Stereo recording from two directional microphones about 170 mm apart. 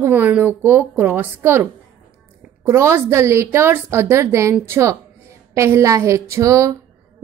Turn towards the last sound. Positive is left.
turn(degrees=-20)  # may be behind; listen again after turning